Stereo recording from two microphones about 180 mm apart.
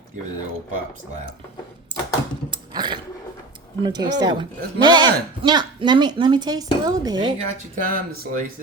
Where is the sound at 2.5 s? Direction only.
25° right (ahead or behind).